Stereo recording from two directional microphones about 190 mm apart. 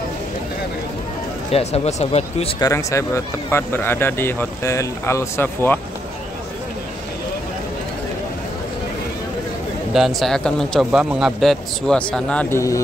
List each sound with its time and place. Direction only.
1.5 s speech: 35° left (ahead or behind)
2.6 s speech: 15° left (ahead or behind)
9.9 s a man's voice: centre (ahead or behind)